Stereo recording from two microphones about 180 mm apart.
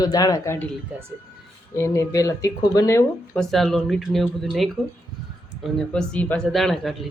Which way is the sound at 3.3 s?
Centre (ahead or behind).